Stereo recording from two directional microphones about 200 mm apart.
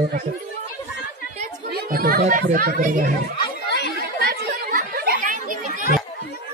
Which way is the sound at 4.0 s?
50° right (ahead or behind).